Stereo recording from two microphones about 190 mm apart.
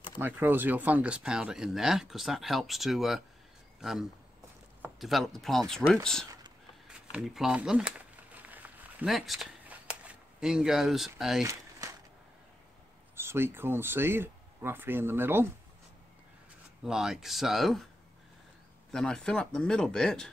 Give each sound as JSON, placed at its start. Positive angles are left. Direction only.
{"t": 0.2, "sound": "speech", "side_deg": -10}
{"t": 8.4, "sound": "a sound", "side_deg": -10}
{"t": 11.1, "sound": "speech", "side_deg": 0}
{"t": 11.4, "sound": "walk", "side_deg": -15}
{"t": 13.1, "sound": "speech", "side_deg": -15}
{"t": 16.8, "sound": "speech", "side_deg": 0}
{"t": 18.9, "sound": "speech", "side_deg": 5}